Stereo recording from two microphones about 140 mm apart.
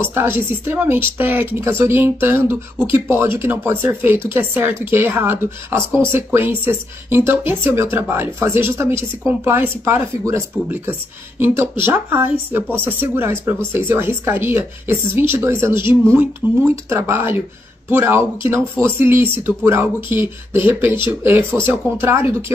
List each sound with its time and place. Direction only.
0.0 s speech: 15° right (ahead or behind)